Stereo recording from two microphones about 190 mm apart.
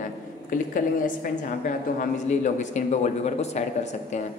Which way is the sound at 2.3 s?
40° left (ahead or behind).